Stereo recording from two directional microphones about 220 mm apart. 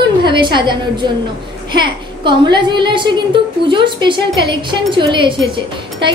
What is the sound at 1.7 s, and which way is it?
A woman's voice, 20° right (ahead or behind).